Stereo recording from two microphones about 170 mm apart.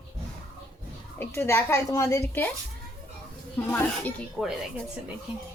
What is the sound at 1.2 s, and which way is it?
A woman's voice, 15° left (ahead or behind).